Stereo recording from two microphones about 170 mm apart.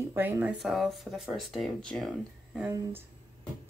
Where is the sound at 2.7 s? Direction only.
15° right (ahead or behind).